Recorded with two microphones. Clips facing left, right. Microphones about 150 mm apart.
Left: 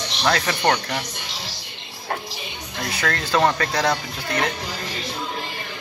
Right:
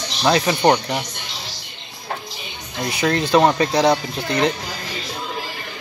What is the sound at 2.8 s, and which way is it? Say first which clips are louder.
Speech: right 6 dB; 15° right (ahead or behind).